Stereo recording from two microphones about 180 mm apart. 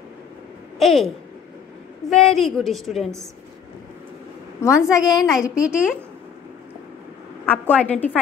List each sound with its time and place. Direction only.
0.7 s a woman's voice: centre (ahead or behind)
4.6 s a woman's voice: 15° left (ahead or behind)
5.5 s a woman's voice: 5° right (ahead or behind)
7.4 s a woman's voice: 10° left (ahead or behind)